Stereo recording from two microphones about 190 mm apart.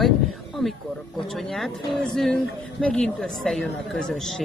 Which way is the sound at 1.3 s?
Centre (ahead or behind).